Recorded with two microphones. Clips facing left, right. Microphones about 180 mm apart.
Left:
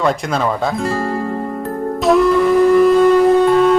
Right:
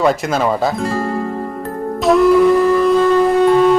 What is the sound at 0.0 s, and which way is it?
Speech, 5° right (ahead or behind).